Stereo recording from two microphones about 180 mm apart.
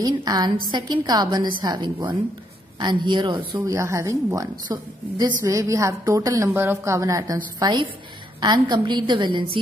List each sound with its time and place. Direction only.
0.0 s a woman's voice: 20° right (ahead or behind)
3.5 s a woman's voice: 15° right (ahead or behind)